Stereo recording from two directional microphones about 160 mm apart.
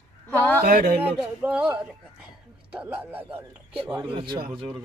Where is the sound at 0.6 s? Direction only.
65° right (ahead or behind).